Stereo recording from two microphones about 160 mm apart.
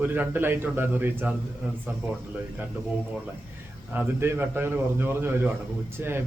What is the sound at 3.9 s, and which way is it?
A man's voice, 10° right (ahead or behind).